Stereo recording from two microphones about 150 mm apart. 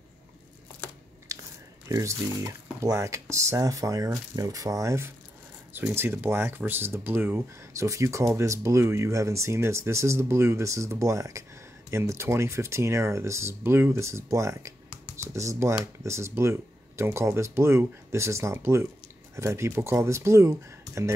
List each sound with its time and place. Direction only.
1.3 s biting: 20° right (ahead or behind)
1.9 s speech: 20° right (ahead or behind)